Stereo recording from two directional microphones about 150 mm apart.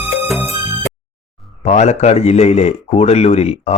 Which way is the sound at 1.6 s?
50° left (ahead or behind).